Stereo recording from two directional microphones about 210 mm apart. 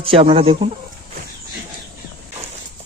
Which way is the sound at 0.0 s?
25° right (ahead or behind).